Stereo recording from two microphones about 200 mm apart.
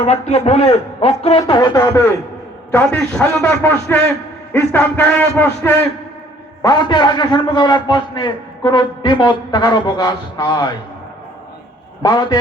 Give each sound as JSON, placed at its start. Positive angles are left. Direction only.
{"t": 0.1, "sound": "a man's voice", "side_deg": 30}
{"t": 12.0, "sound": "a man's voice", "side_deg": 20}